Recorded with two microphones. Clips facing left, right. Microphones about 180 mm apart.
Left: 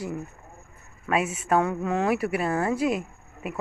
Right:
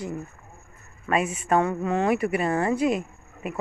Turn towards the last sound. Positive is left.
turn(degrees=5)  # may be behind; listen again after turning